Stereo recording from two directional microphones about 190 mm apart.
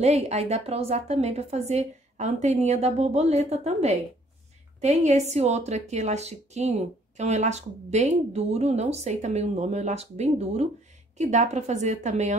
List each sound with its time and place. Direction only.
0.0 s a woman's voice: 35° right (ahead or behind)